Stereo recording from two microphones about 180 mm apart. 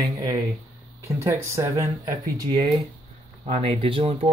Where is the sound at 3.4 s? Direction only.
35° right (ahead or behind).